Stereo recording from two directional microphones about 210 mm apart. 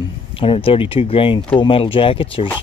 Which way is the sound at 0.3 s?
25° left (ahead or behind).